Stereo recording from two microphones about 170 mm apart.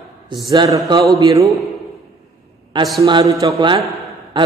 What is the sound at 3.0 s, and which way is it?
Speech, 25° right (ahead or behind).